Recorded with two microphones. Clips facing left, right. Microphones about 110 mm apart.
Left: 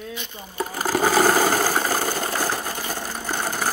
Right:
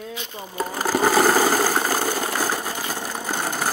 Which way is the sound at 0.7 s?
Centre (ahead or behind).